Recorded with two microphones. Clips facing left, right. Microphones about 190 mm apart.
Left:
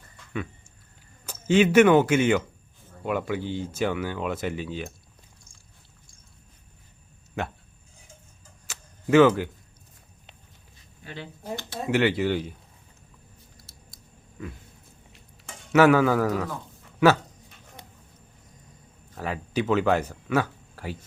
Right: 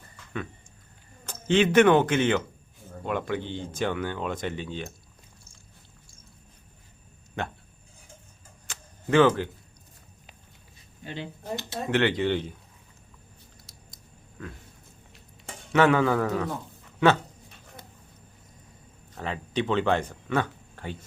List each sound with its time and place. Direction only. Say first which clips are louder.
1.3 s speech: left 2 dB; 10° left (ahead or behind)
8.6 s tick-tock: left 3 dB; 10° left (ahead or behind)
11.0 s speech: right 3 dB; 25° right (ahead or behind)
11.8 s speech: left 1 dB; 10° left (ahead or behind)
13.6 s a sound: even; 5° left (ahead or behind)
15.7 s a man's voice: left 3 dB; 5° left (ahead or behind)
19.1 s speech: left 1 dB; 5° left (ahead or behind)